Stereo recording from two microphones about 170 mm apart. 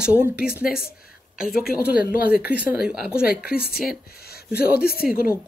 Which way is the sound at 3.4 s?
65° left (ahead or behind).